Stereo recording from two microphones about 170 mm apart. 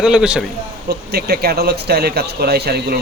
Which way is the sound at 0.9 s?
65° right (ahead or behind).